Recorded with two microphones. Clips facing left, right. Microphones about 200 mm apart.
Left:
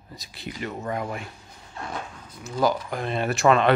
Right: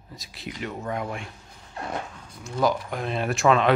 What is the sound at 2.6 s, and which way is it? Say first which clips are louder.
Speech: even; centre (ahead or behind).